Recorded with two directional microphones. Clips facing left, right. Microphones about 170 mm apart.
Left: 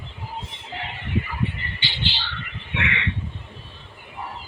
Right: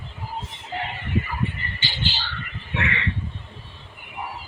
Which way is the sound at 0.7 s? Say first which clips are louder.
Right 1 dB; 45° right (ahead or behind).